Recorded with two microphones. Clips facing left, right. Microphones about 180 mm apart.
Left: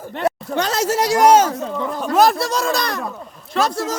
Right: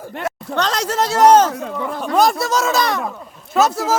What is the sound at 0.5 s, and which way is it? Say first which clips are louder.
Speech: right 2 dB; 10° left (ahead or behind).